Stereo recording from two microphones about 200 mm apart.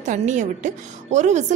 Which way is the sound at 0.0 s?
35° right (ahead or behind).